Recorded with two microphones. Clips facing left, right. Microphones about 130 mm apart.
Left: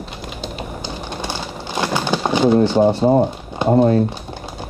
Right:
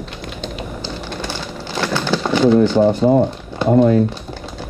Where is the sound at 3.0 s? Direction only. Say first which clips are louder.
Right 1 dB; 20° left (ahead or behind).